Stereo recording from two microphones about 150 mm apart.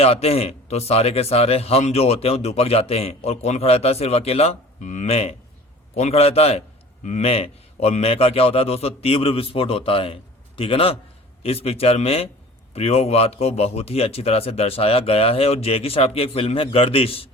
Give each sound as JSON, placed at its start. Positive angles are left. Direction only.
{"t": 0.0, "sound": "a man's voice", "side_deg": 40}